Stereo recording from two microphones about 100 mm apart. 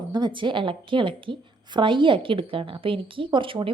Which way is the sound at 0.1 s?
50° right (ahead or behind).